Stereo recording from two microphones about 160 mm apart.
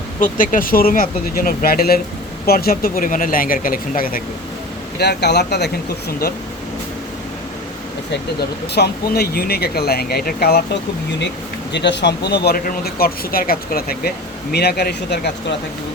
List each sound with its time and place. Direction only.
0.2 s speech: 60° left (ahead or behind)
4.9 s speech: 90° left
8.4 s speech: 90° left
11.7 s speech: 90° left; by 14.1 s 70° left (ahead or behind)
14.5 s speech: 90° left